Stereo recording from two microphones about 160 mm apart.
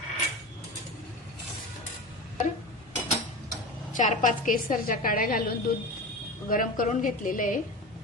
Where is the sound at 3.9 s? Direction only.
50° left (ahead or behind).